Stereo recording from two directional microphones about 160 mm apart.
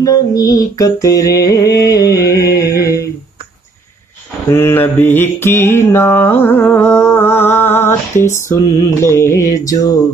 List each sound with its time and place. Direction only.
0.0 s music: 20° left (ahead or behind)
4.5 s mantra: 15° left (ahead or behind)